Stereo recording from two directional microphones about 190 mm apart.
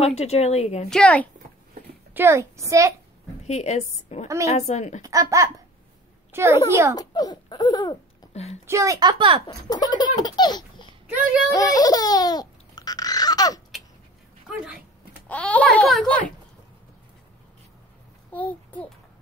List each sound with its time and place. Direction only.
0.0 s speech: 35° left (ahead or behind)
0.8 s speech: 5° left (ahead or behind)
2.1 s a child's voice: 15° right (ahead or behind)
3.4 s a woman's voice: 35° left (ahead or behind)
5.0 s a child's voice: 20° right (ahead or behind)
7.0 s a sound: 20° left (ahead or behind)
8.3 s speech: 35° left (ahead or behind)
8.6 s a child's voice: 15° right (ahead or behind)
9.5 s laughter: 20° left (ahead or behind)
11.1 s a child's voice: 10° right (ahead or behind)
11.5 s laughter: 20° left (ahead or behind)
15.2 s a child's voice: 5° left (ahead or behind)
18.3 s a child's voice: 10° left (ahead or behind)